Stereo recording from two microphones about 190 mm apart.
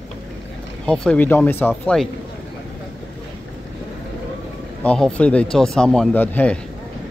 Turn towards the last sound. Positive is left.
turn(degrees=10)  # may be behind; listen again after turning